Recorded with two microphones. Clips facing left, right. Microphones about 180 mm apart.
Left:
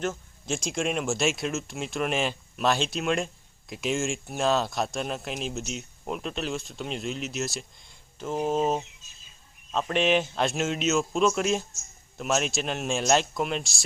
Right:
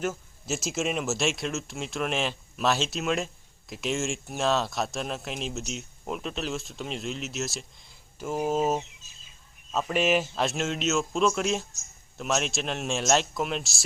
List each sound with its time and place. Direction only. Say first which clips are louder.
0.0 s speech: even; 5° right (ahead or behind)